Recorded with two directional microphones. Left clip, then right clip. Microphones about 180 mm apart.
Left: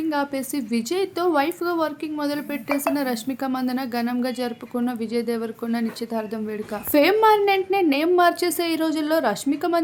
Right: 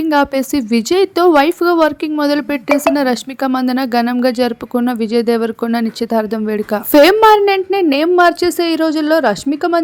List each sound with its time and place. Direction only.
0.1 s a woman's voice: 50° right (ahead or behind)